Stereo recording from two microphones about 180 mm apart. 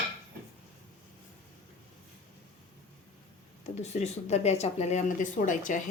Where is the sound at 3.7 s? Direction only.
40° left (ahead or behind).